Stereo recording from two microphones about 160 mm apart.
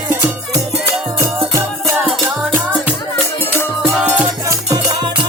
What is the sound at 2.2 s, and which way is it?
Music, 15° right (ahead or behind).